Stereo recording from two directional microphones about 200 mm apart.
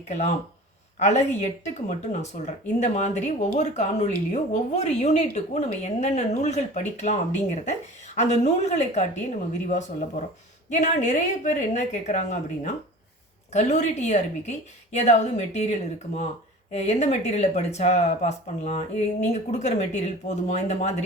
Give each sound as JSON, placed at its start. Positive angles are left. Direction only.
{"t": 0.1, "sound": "speech", "side_deg": 35}
{"t": 2.4, "sound": "speech", "side_deg": 35}
{"t": 10.7, "sound": "speech", "side_deg": 40}